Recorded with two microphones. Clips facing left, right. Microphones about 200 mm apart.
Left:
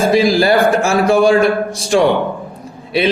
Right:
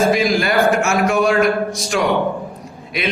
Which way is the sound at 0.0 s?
30° left (ahead or behind).